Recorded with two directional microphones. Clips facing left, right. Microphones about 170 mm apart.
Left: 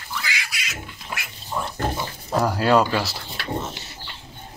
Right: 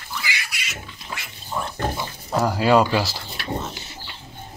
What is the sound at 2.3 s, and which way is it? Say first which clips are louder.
Speech: right 1 dB; centre (ahead or behind).